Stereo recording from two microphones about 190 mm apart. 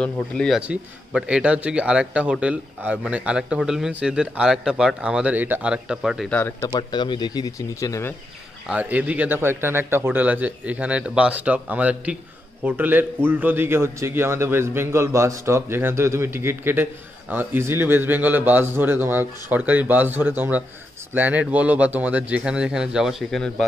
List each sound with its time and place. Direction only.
0.0 s a man's voice: 5° left (ahead or behind)
6.6 s speech: 25° left (ahead or behind)
8.6 s a man's voice: 10° right (ahead or behind)